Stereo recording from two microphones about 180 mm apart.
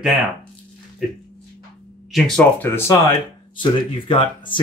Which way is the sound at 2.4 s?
10° left (ahead or behind).